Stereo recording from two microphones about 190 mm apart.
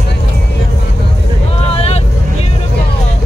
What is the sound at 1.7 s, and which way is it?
Vehicle, 35° left (ahead or behind).